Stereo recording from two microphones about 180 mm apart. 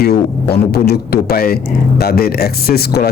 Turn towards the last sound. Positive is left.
turn(degrees=60)  # may be behind; listen again after turning